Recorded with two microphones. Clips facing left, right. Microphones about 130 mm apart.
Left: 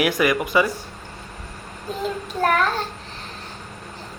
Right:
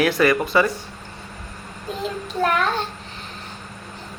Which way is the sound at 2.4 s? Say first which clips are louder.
Left 1 dB; 45° left (ahead or behind).